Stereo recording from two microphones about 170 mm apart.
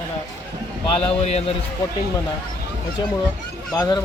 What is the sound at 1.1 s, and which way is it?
Speech, 40° left (ahead or behind).